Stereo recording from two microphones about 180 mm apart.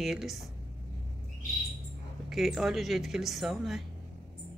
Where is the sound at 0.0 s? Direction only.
Centre (ahead or behind).